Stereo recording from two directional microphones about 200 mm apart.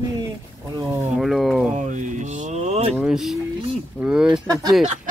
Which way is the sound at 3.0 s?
Centre (ahead or behind).